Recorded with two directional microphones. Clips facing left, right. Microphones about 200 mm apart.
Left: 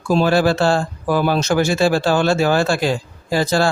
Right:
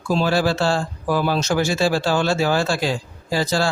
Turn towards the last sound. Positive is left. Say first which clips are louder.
# left 4 dB
turn(degrees=55)  # may be behind; listen again after turning